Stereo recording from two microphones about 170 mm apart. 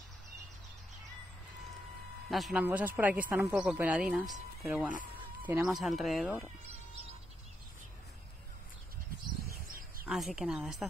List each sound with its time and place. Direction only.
2.2 s a woman's voice: centre (ahead or behind)
9.7 s bird: 55° right (ahead or behind)
10.0 s speech: centre (ahead or behind)